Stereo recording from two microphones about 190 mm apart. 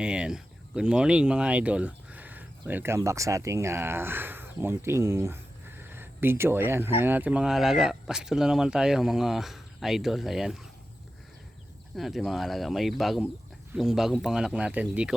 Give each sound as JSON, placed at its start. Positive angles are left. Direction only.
{"t": 0.0, "sound": "speech", "side_deg": -5}
{"t": 11.9, "sound": "speech", "side_deg": 0}